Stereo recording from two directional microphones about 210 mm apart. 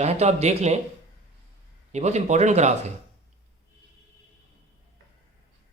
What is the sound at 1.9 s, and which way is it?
Speech, 30° right (ahead or behind).